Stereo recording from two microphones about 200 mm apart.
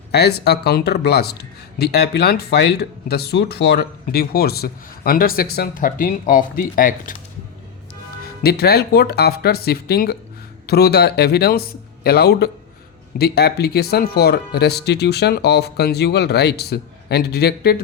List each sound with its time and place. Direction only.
0.1 s speech: 55° left (ahead or behind)
8.2 s speech: 50° left (ahead or behind)